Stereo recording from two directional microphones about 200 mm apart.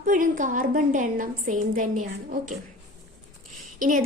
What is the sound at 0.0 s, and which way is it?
A woman's voice, 40° right (ahead or behind).